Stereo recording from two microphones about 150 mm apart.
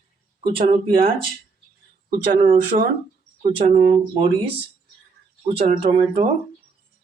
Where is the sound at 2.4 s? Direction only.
35° right (ahead or behind).